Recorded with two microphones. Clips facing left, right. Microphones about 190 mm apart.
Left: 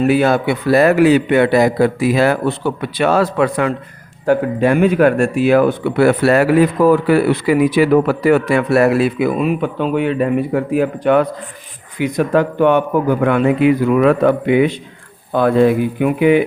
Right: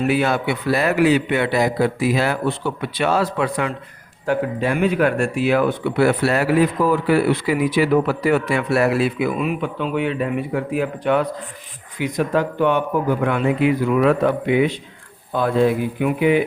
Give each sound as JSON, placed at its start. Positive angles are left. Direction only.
{"t": 0.1, "sound": "speech", "side_deg": 40}
{"t": 9.3, "sound": "a man's voice", "side_deg": 35}